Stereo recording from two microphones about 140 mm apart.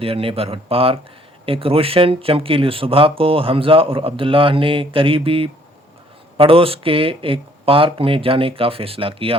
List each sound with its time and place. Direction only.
0.0 s speech: 40° right (ahead or behind)